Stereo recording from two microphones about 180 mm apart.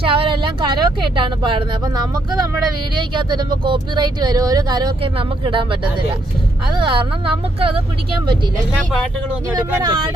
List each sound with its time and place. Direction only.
0.0 s speech: 30° right (ahead or behind)
9.6 s speech: 25° right (ahead or behind)